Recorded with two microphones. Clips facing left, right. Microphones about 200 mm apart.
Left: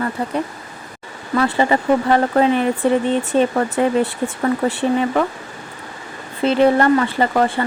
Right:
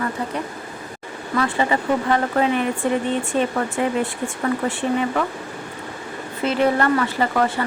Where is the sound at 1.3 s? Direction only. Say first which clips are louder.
Left 4 dB; 35° left (ahead or behind).